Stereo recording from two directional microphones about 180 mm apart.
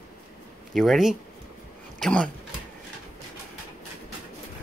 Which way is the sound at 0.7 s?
Centre (ahead or behind).